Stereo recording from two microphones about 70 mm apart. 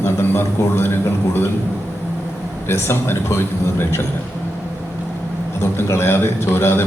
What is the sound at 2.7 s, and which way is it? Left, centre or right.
A man's voice, left.